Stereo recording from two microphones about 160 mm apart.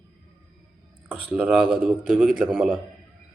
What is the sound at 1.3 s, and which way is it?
Speech, 5° right (ahead or behind).